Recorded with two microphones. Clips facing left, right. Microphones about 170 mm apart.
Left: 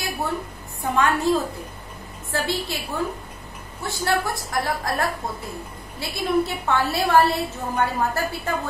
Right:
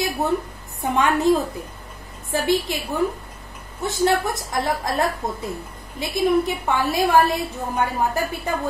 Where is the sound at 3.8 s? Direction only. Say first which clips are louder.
Right 4 dB; 20° right (ahead or behind).